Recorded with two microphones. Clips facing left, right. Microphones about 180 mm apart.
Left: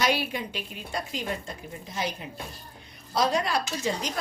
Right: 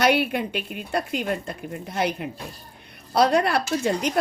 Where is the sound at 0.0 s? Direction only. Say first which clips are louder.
Right 6 dB; 60° right (ahead or behind).